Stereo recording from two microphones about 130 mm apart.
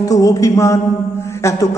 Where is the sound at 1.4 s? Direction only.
20° left (ahead or behind).